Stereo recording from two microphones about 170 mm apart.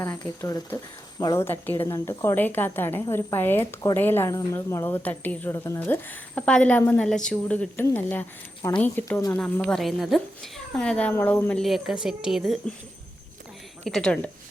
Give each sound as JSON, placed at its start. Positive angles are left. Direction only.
{"t": 0.0, "sound": "a woman's voice", "side_deg": 15}
{"t": 9.4, "sound": "a woman's voice", "side_deg": 5}
{"t": 13.8, "sound": "a woman's voice", "side_deg": 5}